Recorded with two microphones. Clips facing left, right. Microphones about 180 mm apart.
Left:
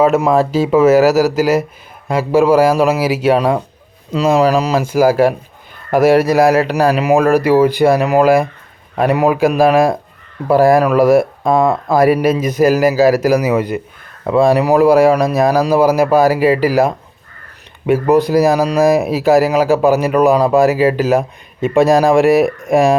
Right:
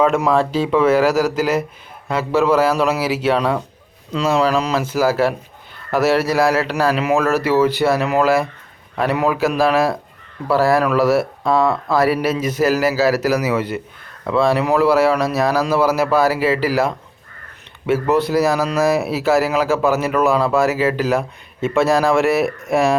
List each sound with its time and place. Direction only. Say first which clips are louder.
0.0 s speech: left 4 dB; 5° left (ahead or behind)
6.3 s speech: left 5 dB; 15° left (ahead or behind)
11.0 s speech: left 5 dB; 50° left (ahead or behind)
11.9 s speech: left 6 dB; 15° left (ahead or behind)